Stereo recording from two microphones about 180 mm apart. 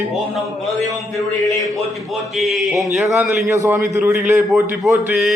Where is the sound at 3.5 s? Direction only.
15° right (ahead or behind).